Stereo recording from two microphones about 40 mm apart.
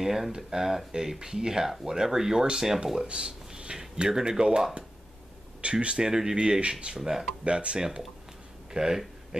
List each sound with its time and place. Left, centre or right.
0.0 s speech: centre
5.6 s speech: right
6.0 s speech: centre
7.0 s speech: centre
7.4 s speech: right
8.6 s a sound: centre